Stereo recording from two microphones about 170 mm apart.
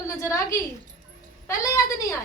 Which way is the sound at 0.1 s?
15° left (ahead or behind).